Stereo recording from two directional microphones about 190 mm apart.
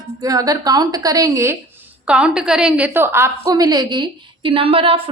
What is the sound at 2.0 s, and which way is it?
A woman's voice, 5° right (ahead or behind).